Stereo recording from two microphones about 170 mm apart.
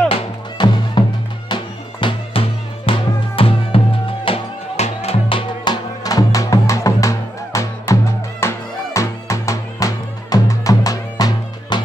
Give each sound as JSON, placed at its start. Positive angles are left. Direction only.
{"t": 0.1, "sound": "music", "side_deg": 25}